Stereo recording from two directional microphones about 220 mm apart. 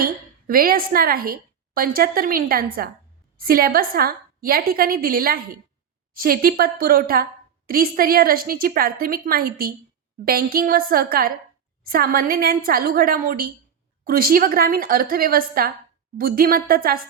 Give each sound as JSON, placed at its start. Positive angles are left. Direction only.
{"t": 0.0, "sound": "a woman's voice", "side_deg": -40}